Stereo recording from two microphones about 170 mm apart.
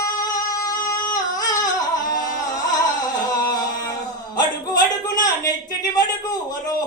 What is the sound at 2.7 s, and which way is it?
Music, 25° left (ahead or behind).